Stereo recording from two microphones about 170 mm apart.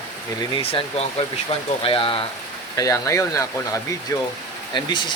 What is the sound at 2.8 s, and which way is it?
Speech, 20° left (ahead or behind).